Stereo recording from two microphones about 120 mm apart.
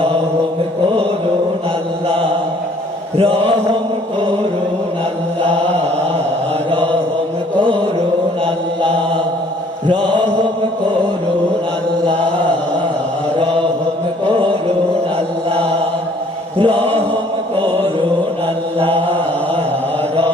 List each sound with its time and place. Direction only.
3.2 s mantra: 55° right (ahead or behind)
5.4 s chant: 10° left (ahead or behind)
14.3 s chant: 45° right (ahead or behind)
16.6 s mantra: 50° right (ahead or behind)
18.8 s mantra: 50° right (ahead or behind)